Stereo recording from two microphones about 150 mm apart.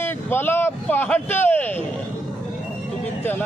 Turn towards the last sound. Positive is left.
turn(degrees=10)  # may be behind; listen again after turning